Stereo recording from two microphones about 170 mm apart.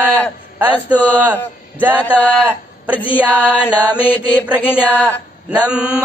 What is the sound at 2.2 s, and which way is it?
Music, 10° left (ahead or behind).